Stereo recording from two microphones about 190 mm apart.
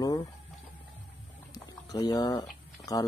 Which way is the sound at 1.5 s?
20° left (ahead or behind).